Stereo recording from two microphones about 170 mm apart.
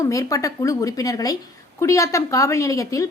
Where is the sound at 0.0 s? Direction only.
20° left (ahead or behind).